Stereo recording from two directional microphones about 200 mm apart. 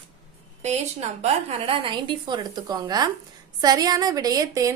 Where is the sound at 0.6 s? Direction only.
30° right (ahead or behind).